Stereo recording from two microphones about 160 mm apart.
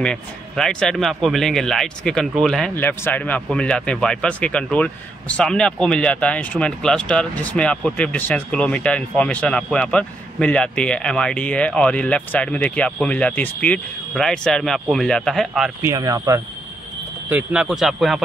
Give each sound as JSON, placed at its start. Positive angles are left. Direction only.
{"t": 0.0, "sound": "speech", "side_deg": 5}
{"t": 15.8, "sound": "speech", "side_deg": -20}
{"t": 17.3, "sound": "a man's voice", "side_deg": -10}